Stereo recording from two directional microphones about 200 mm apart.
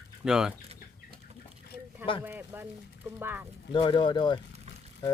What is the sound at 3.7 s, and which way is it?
Speech, 25° left (ahead or behind).